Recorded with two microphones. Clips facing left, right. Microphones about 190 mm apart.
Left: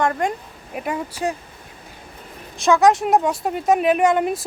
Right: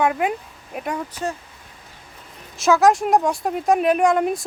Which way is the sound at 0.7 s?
5° left (ahead or behind).